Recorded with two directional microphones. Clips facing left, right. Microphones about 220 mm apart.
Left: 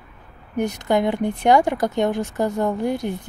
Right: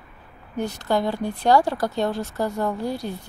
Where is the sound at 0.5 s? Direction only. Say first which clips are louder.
Left 3 dB; 20° left (ahead or behind).